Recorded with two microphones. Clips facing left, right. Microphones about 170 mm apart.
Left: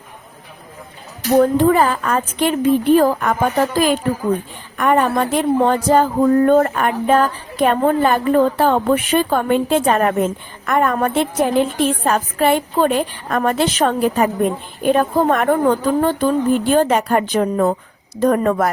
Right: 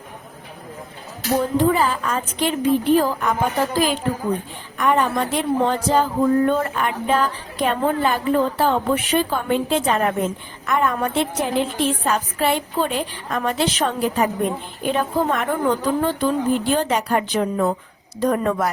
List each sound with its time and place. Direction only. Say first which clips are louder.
1.4 s speech: left 6 dB; 55° left (ahead or behind)